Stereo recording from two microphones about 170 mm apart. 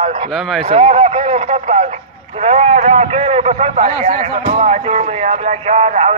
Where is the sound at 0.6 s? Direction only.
35° right (ahead or behind).